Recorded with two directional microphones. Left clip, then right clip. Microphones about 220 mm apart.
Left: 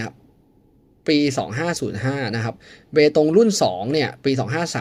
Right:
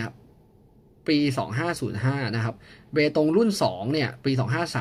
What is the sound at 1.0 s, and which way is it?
Speech, 15° left (ahead or behind).